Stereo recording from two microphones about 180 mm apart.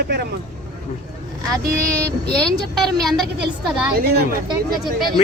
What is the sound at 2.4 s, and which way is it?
Speech, centre (ahead or behind).